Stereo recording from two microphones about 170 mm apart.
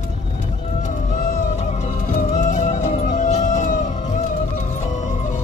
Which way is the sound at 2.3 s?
45° left (ahead or behind).